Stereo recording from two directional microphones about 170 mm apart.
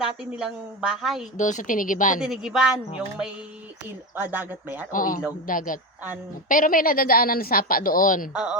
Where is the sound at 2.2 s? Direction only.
5° right (ahead or behind).